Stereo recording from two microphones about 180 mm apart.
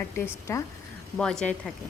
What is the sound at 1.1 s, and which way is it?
Speech, 5° left (ahead or behind).